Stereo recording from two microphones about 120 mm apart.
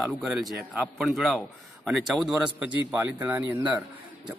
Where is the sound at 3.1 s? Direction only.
15° right (ahead or behind).